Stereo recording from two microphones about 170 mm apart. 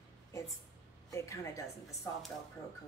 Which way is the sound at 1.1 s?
15° left (ahead or behind).